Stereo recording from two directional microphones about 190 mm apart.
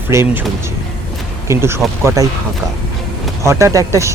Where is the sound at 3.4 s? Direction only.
15° right (ahead or behind).